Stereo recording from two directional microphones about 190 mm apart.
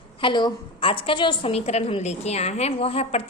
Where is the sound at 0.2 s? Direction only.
25° left (ahead or behind).